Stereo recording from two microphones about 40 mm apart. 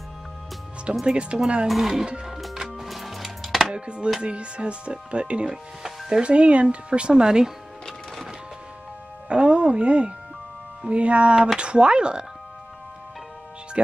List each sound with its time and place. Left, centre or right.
1.0 s speech: right
1.7 s speech: centre
2.2 s music: centre
3.7 s speech: right
5.8 s music: centre
6.2 s speech: right
9.3 s music: right
10.9 s speech: right